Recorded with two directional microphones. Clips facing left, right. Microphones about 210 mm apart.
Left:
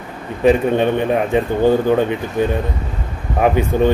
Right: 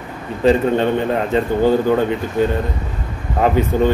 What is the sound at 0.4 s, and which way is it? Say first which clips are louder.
A man's voice: left 1 dB; 15° left (ahead or behind).